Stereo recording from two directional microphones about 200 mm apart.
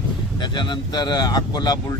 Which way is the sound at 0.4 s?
20° left (ahead or behind).